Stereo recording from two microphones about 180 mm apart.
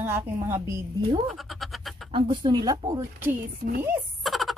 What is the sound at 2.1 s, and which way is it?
Speech, 25° right (ahead or behind).